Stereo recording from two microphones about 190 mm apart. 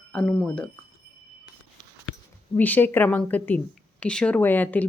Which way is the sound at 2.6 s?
10° left (ahead or behind).